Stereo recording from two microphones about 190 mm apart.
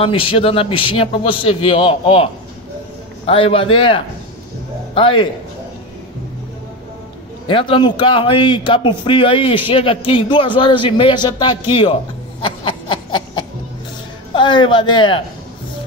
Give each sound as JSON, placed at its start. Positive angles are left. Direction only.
{"t": 0.0, "sound": "a man's voice", "side_deg": 30}
{"t": 7.4, "sound": "a man's voice", "side_deg": 25}
{"t": 12.4, "sound": "a sound", "side_deg": 25}
{"t": 14.3, "sound": "a man's voice", "side_deg": 25}